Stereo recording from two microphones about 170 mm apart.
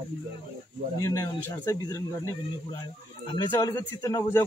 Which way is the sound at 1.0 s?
20° left (ahead or behind).